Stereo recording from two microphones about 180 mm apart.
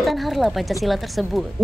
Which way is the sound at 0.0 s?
Centre (ahead or behind).